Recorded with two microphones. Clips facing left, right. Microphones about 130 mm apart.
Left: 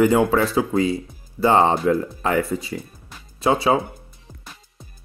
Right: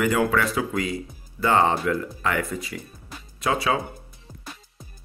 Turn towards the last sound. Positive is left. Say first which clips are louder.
# left 5 dB
turn(degrees=30)  # may be behind; listen again after turning